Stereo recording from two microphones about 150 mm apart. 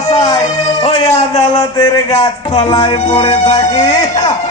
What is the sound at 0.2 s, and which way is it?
Music, 25° left (ahead or behind).